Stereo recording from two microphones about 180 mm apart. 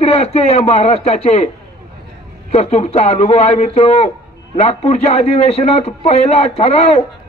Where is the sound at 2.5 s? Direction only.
35° left (ahead or behind).